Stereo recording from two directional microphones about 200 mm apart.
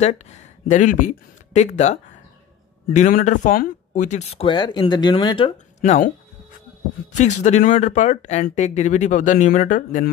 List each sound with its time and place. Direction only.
0.0 s speech: 35° left (ahead or behind)
5.8 s speech: 40° left (ahead or behind)